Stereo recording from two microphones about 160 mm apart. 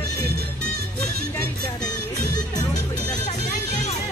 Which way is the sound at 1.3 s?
15° left (ahead or behind).